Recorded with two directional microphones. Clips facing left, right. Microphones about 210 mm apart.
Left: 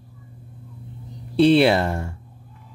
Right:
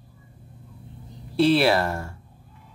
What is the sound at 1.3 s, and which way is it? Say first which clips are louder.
Speech: left 4 dB; 20° left (ahead or behind).